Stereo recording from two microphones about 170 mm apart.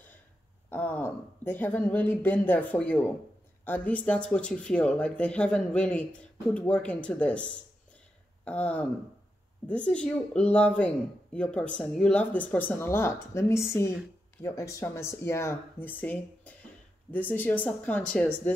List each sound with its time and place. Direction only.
0.7 s speech: 10° left (ahead or behind)